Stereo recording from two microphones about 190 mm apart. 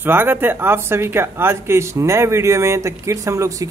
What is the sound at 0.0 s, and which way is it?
Speech, 10° right (ahead or behind).